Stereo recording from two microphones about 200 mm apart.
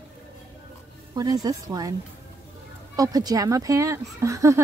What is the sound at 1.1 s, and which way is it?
Speech, 20° right (ahead or behind).